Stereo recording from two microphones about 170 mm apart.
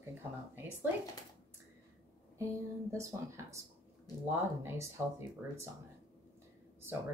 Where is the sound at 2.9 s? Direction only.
15° right (ahead or behind).